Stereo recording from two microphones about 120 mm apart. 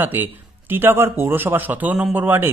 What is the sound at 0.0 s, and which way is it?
A man's voice, 15° right (ahead or behind).